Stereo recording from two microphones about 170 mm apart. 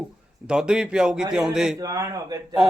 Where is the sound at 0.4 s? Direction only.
5° right (ahead or behind).